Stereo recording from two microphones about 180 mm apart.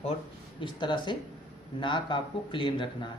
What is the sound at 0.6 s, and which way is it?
Speech, 25° left (ahead or behind).